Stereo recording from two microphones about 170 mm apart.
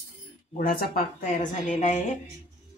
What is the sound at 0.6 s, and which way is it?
A woman's voice, 55° left (ahead or behind).